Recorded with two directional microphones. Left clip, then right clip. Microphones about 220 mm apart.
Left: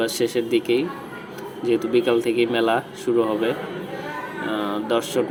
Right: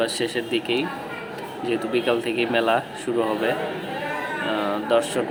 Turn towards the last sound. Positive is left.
turn(degrees=5)  # may be behind; listen again after turning